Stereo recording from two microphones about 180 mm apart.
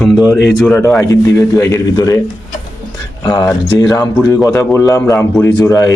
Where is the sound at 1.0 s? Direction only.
20° left (ahead or behind).